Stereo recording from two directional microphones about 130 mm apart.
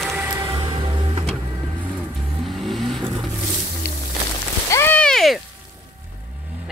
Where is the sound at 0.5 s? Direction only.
35° right (ahead or behind).